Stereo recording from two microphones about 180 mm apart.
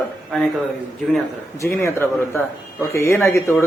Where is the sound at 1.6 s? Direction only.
15° left (ahead or behind).